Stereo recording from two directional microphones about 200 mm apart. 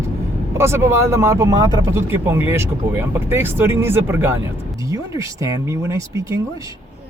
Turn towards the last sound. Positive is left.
turn(degrees=-15)  # may be behind; listen again after turning